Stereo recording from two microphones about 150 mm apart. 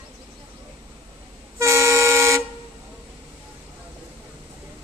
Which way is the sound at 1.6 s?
20° right (ahead or behind).